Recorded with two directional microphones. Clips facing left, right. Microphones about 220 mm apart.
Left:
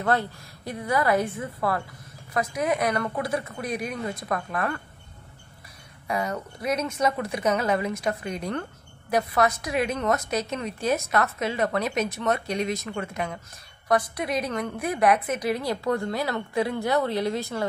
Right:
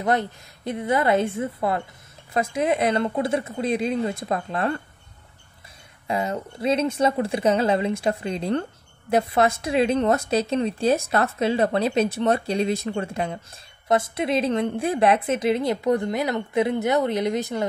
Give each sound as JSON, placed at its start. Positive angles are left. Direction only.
{"t": 0.0, "sound": "a woman's voice", "side_deg": -20}
{"t": 6.0, "sound": "a woman's voice", "side_deg": -25}